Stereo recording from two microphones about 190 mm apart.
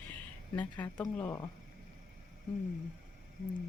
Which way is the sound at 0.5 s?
10° left (ahead or behind).